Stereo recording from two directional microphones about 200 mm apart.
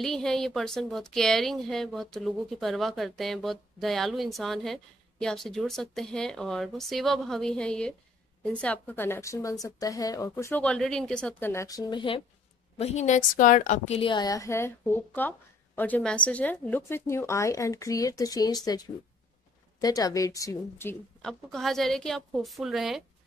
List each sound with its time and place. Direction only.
0.0 s a woman's voice: centre (ahead or behind); by 12.2 s 25° left (ahead or behind)
12.7 s a woman's voice: 35° left (ahead or behind); by 20.9 s 15° left (ahead or behind)
21.2 s a woman's voice: centre (ahead or behind)